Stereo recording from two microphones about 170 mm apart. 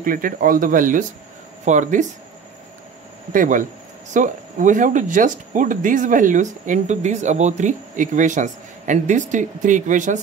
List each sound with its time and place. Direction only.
0.0 s speech: 55° right (ahead or behind)
3.3 s speech: 50° right (ahead or behind)